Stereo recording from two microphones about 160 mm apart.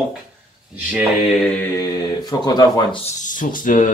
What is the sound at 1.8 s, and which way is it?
Speech, 25° left (ahead or behind).